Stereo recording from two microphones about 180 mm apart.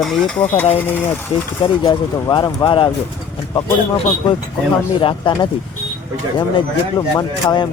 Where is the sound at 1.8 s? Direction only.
20° left (ahead or behind).